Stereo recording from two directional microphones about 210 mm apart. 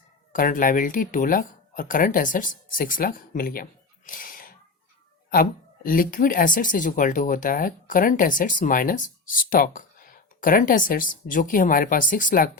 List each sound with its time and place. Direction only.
0.3 s speech: 40° left (ahead or behind)